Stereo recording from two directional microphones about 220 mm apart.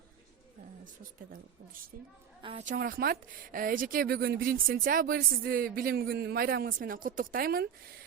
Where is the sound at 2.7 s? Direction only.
40° right (ahead or behind).